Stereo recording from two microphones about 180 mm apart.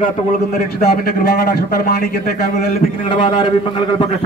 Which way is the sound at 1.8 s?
60° left (ahead or behind).